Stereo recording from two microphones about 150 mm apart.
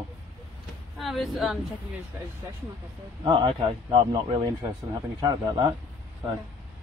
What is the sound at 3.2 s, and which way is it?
A man's voice, 30° right (ahead or behind).